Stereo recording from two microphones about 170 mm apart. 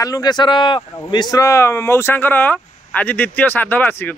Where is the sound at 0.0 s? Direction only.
20° left (ahead or behind).